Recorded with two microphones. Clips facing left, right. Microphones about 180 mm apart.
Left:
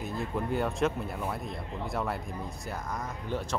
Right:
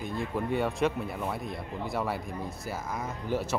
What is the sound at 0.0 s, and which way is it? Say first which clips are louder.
Speech: right 1 dB; centre (ahead or behind).